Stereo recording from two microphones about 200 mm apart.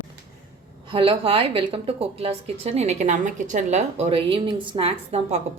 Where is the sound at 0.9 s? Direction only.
25° right (ahead or behind).